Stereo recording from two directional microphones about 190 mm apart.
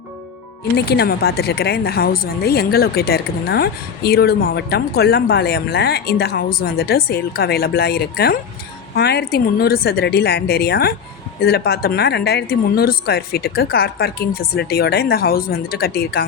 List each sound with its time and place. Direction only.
0.9 s a woman's voice: 60° left (ahead or behind)